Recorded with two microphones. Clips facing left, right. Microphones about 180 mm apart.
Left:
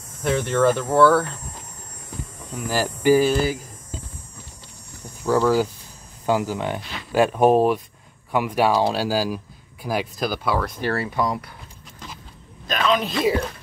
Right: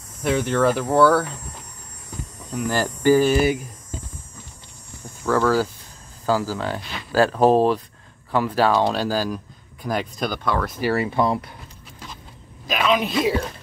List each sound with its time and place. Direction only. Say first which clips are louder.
0.2 s hum: even; centre (ahead or behind)
2.5 s speech: right 1 dB; 5° left (ahead or behind)
5.2 s speech: left 1 dB; 15° left (ahead or behind); by 10.9 s centre (ahead or behind)
11.1 s speech: right 3 dB; 25° right (ahead or behind)
12.6 s a man's voice: right 1 dB; 5° right (ahead or behind)